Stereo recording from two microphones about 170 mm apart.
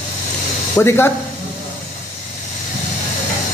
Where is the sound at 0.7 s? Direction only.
15° left (ahead or behind).